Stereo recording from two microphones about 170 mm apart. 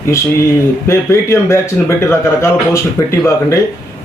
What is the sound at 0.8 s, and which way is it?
Speech, 15° left (ahead or behind).